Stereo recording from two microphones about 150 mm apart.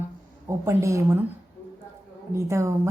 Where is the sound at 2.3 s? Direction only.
20° right (ahead or behind).